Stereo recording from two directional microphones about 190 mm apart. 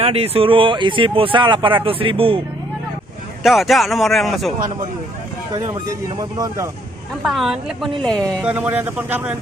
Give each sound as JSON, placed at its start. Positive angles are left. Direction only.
{"t": 0.0, "sound": "speech", "side_deg": -30}
{"t": 3.4, "sound": "speech", "side_deg": 0}
{"t": 5.9, "sound": "speech", "side_deg": -20}
{"t": 7.2, "sound": "speech", "side_deg": 0}
{"t": 8.4, "sound": "speech", "side_deg": -10}